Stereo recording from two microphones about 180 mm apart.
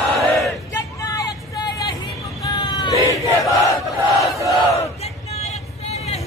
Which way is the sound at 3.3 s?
15° left (ahead or behind).